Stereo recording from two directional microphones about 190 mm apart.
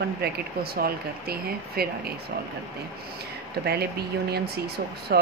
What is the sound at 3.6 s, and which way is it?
Speech, 60° right (ahead or behind).